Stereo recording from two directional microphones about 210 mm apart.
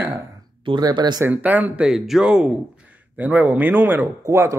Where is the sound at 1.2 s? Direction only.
10° right (ahead or behind).